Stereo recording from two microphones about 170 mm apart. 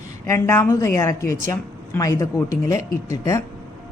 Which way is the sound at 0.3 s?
15° left (ahead or behind).